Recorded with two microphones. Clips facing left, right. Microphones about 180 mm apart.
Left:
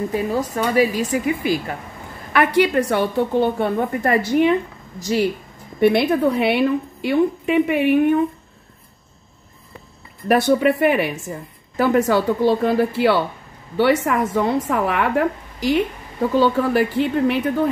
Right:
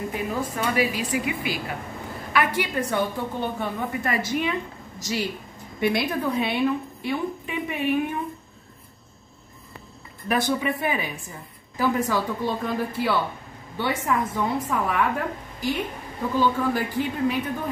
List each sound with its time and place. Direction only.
0.1 s speech: 40° left (ahead or behind)
2.3 s a woman's voice: 65° left (ahead or behind)
5.8 s a woman's voice: 60° left (ahead or behind)
10.2 s a woman's voice: 65° left (ahead or behind); by 15.8 s 90° left
16.3 s a woman's voice: 75° left (ahead or behind)